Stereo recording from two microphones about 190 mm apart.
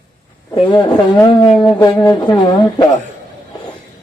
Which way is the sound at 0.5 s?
25° left (ahead or behind).